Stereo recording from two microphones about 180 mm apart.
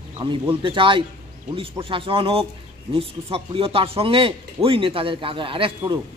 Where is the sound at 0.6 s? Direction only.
30° right (ahead or behind).